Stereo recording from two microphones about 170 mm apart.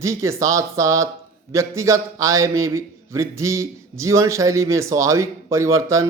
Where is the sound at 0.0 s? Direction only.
15° right (ahead or behind).